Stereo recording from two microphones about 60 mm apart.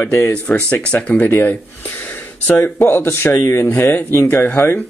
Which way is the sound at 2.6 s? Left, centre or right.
Left.